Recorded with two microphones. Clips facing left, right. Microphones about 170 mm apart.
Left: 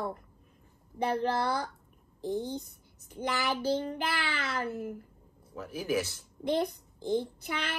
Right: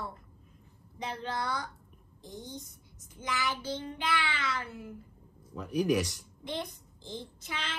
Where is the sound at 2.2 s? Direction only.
65° left (ahead or behind).